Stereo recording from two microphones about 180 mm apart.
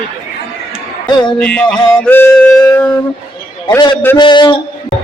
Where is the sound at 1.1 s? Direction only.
25° left (ahead or behind).